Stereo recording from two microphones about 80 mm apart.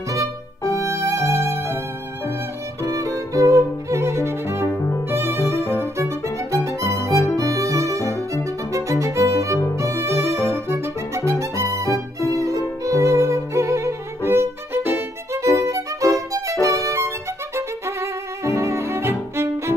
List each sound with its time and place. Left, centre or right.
0.1 s music: right
2.8 s violin: right
4.6 s music: left
5.1 s music: right
7.3 s violin: right
8.7 s music: right
9.8 s violin: right
11.9 s music: left
12.8 s violin: right
16.6 s music: right
17.6 s violin: right